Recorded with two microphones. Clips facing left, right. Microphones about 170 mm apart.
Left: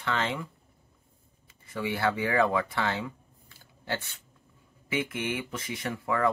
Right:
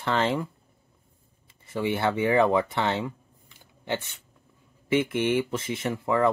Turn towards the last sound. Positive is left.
turn(degrees=-25)  # may be behind; listen again after turning